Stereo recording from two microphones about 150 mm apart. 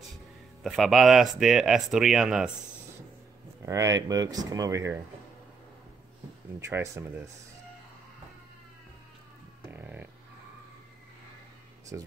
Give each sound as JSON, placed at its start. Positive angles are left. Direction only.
{"t": 0.7, "sound": "speech", "side_deg": 0}
{"t": 3.6, "sound": "speech", "side_deg": -20}
{"t": 6.6, "sound": "speech", "side_deg": -15}
{"t": 9.7, "sound": "a sound", "side_deg": -10}
{"t": 11.9, "sound": "speech", "side_deg": -15}